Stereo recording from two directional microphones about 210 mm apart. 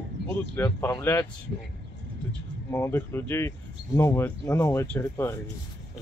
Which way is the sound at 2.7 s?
10° left (ahead or behind).